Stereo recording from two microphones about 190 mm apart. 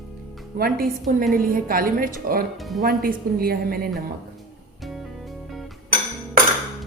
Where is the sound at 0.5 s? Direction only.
50° right (ahead or behind).